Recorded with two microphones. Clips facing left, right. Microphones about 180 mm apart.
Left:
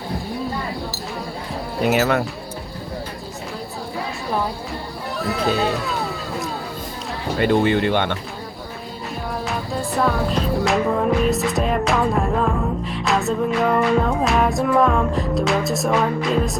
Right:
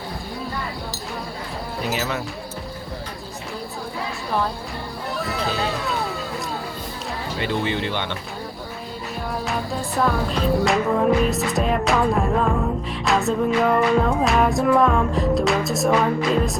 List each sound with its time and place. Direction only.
1.8 s speech: 60° left (ahead or behind)
5.2 s speech: centre (ahead or behind)
7.3 s speech: 50° left (ahead or behind)
9.3 s music: centre (ahead or behind)